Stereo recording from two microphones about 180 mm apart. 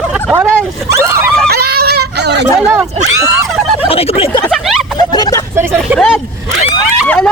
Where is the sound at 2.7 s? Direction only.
20° right (ahead or behind).